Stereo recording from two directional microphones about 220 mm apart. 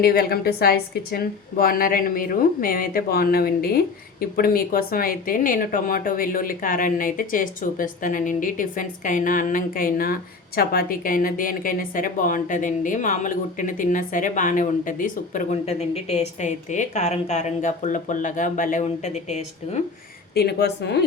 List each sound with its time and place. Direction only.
0.0 s speech: 45° left (ahead or behind)
20.3 s a woman's voice: 50° left (ahead or behind)